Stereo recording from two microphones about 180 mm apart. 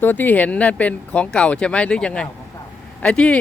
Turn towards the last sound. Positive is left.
turn(degrees=5)  # may be behind; listen again after turning